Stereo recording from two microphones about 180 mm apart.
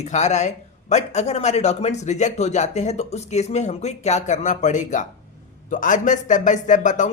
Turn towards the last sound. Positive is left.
turn(degrees=45)  # may be behind; listen again after turning